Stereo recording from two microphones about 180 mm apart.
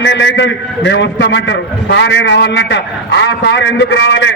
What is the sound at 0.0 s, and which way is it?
A man's voice, 80° left.